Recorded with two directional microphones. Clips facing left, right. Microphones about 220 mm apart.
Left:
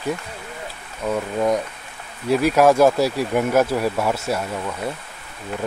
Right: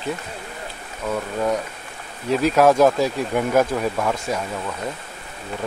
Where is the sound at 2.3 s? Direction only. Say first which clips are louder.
Left 1 dB; 10° left (ahead or behind).